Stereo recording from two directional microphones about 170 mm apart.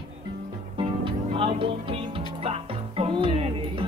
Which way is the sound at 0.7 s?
30° right (ahead or behind).